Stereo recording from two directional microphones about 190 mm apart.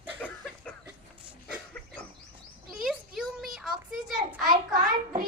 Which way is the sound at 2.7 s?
Centre (ahead or behind).